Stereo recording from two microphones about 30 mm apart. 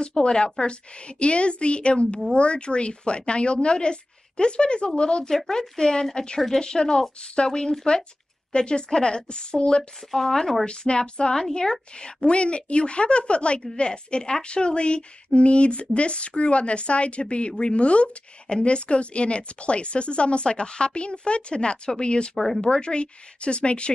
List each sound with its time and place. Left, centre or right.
0.0 s a woman's voice: left
5.5 s a woman's voice: centre
10.1 s speech: centre
10.6 s a woman's voice: left